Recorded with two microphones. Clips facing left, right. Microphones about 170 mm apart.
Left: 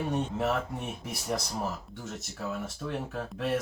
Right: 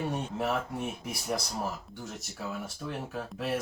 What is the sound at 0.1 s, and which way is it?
Speech, centre (ahead or behind).